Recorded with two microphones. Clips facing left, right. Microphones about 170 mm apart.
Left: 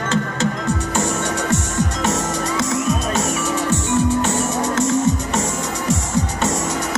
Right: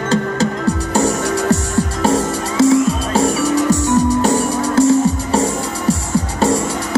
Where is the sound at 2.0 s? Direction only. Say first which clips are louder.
Right 5 dB; 30° right (ahead or behind).